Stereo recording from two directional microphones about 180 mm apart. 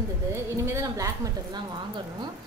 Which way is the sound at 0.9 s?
20° right (ahead or behind).